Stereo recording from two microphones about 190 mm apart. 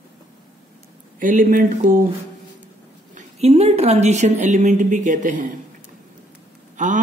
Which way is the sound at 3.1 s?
35° right (ahead or behind).